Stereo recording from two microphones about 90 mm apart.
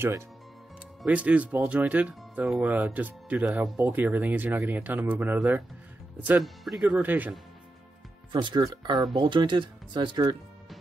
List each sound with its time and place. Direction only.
1.0 s speech: 15° right (ahead or behind)
6.4 s speech: centre (ahead or behind)
6.8 s speech: 15° right (ahead or behind)
8.3 s speech: 60° right (ahead or behind)